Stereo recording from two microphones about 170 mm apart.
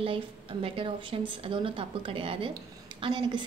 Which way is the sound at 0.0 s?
30° right (ahead or behind).